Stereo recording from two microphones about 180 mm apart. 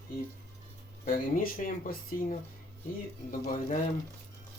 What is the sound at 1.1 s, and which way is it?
Speech, 50° left (ahead or behind).